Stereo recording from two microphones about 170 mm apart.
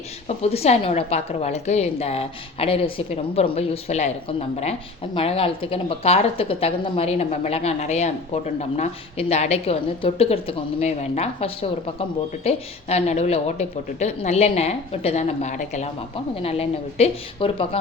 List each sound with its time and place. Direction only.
0.3 s a woman's voice: 40° left (ahead or behind)